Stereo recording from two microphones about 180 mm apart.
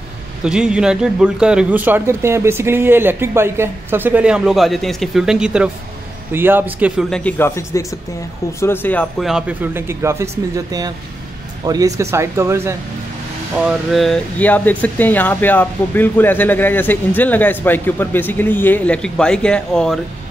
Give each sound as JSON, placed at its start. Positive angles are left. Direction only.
{"t": 0.4, "sound": "a man's voice", "side_deg": -5}
{"t": 7.1, "sound": "speech", "side_deg": 5}
{"t": 9.2, "sound": "a man's voice", "side_deg": -5}
{"t": 13.7, "sound": "speech", "side_deg": 0}